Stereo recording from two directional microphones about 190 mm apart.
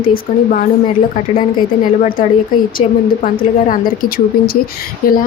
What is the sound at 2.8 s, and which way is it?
Speech, 35° left (ahead or behind).